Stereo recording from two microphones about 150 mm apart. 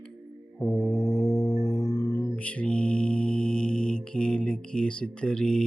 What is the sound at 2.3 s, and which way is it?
Mantra, 10° left (ahead or behind).